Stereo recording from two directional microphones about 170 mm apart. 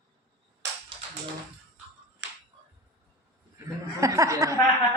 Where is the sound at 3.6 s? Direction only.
20° right (ahead or behind).